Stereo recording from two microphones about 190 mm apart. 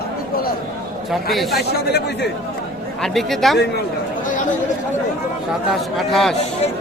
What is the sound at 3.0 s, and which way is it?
Speech, centre (ahead or behind).